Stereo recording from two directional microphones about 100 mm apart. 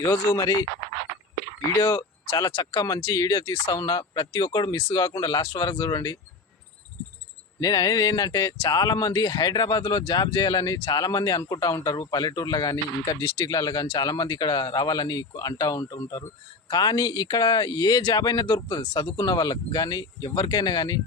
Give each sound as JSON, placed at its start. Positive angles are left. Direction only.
{"t": 0.0, "sound": "speech", "side_deg": 30}
{"t": 1.8, "sound": "speech", "side_deg": 35}
{"t": 7.6, "sound": "speech", "side_deg": 40}